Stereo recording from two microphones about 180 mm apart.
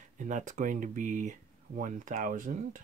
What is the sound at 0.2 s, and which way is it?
Speech, 45° right (ahead or behind).